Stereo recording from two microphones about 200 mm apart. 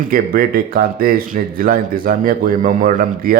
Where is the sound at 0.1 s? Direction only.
45° right (ahead or behind).